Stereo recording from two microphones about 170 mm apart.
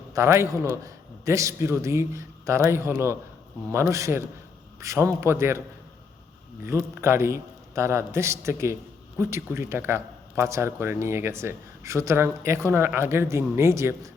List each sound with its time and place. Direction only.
0.1 s a man's voice: 15° right (ahead or behind)
6.7 s a man's voice: 15° right (ahead or behind)